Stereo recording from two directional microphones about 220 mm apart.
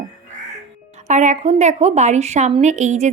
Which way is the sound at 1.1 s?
35° right (ahead or behind).